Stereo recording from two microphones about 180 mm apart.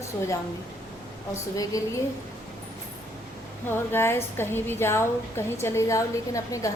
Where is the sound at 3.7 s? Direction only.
15° left (ahead or behind).